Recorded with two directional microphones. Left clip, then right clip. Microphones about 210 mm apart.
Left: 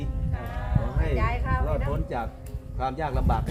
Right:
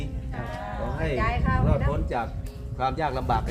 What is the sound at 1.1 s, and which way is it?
Speech, 10° left (ahead or behind).